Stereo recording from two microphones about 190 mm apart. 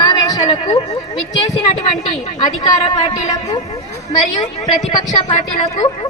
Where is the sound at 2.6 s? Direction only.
25° left (ahead or behind).